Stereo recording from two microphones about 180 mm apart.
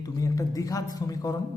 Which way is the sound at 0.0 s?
20° left (ahead or behind).